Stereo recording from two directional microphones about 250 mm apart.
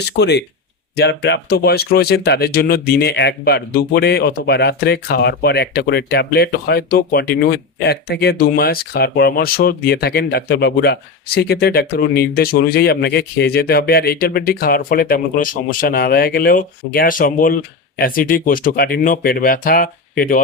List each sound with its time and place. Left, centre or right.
0.2 s speech: left